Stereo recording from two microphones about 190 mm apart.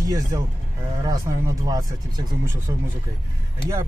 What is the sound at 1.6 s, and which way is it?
Speech, 20° right (ahead or behind).